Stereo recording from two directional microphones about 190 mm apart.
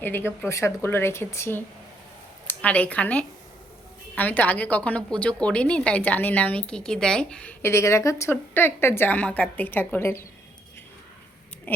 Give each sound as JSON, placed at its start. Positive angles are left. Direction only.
{"t": 0.0, "sound": "a woman's voice", "side_deg": 10}